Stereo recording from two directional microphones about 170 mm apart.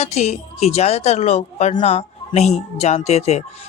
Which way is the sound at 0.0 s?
40° left (ahead or behind).